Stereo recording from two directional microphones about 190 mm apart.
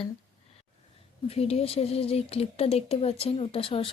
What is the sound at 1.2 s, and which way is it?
Speech, 30° left (ahead or behind).